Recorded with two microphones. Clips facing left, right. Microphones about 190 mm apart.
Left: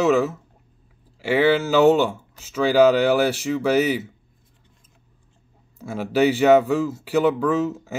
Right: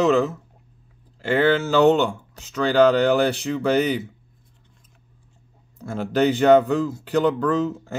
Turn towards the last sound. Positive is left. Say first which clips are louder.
# even
turn(degrees=5)  # may be behind; listen again after turning